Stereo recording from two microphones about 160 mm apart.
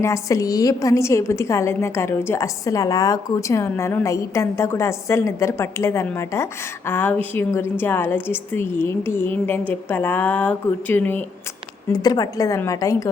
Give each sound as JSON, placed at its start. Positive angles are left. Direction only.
{"t": 0.0, "sound": "a woman's voice", "side_deg": 20}
{"t": 11.9, "sound": "a woman's voice", "side_deg": 25}